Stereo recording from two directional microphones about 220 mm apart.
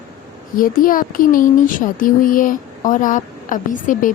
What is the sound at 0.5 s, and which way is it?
Speech, 40° left (ahead or behind).